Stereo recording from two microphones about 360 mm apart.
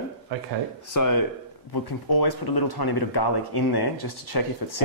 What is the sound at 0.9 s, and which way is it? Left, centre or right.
Speech, left.